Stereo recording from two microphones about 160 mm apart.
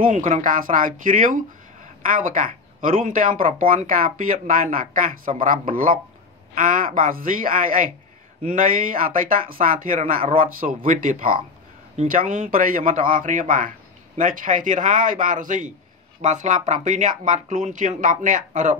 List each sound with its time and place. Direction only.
0.0 s speech: 55° right (ahead or behind)